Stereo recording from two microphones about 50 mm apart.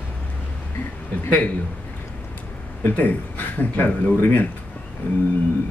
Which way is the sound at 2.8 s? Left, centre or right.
Left.